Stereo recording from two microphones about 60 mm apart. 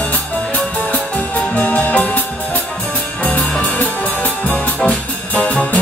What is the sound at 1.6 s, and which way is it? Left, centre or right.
Music, left.